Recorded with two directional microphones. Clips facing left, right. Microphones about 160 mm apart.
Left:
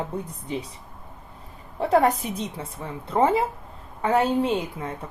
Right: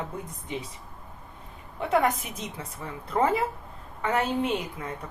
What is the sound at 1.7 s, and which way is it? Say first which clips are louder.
A woman's voice: left 5 dB; 35° left (ahead or behind).